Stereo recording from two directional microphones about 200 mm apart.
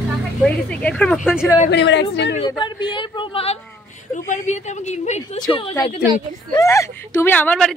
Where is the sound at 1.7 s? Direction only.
60° left (ahead or behind).